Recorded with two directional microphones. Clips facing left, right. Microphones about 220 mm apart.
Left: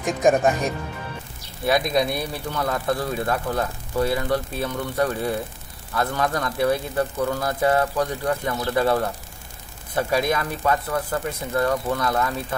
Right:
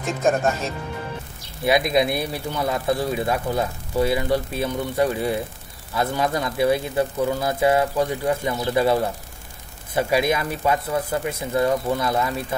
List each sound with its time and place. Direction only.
0.4 s speech: 15° left (ahead or behind)
1.7 s speech: 5° right (ahead or behind)